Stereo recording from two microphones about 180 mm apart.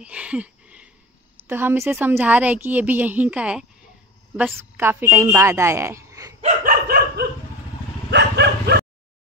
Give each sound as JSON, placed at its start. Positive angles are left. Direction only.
{"t": 0.0, "sound": "a sound", "side_deg": -5}
{"t": 1.5, "sound": "a woman's voice", "side_deg": -10}
{"t": 6.4, "sound": "dog", "side_deg": -50}
{"t": 8.1, "sound": "dog", "side_deg": -70}